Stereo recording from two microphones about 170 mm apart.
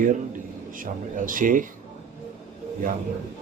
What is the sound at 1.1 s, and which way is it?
Speech, 50° right (ahead or behind).